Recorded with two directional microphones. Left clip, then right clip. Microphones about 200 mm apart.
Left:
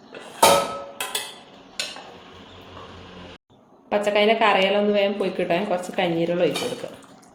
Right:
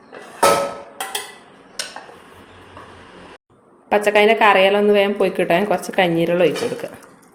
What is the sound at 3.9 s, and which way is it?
A woman's voice, 40° right (ahead or behind).